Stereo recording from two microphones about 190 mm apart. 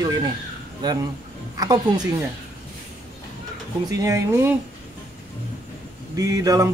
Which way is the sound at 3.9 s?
20° right (ahead or behind).